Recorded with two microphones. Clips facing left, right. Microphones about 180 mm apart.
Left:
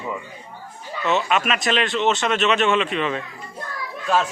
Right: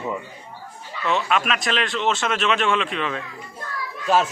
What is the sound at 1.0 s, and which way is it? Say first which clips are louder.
A man's voice: left 1 dB; centre (ahead or behind).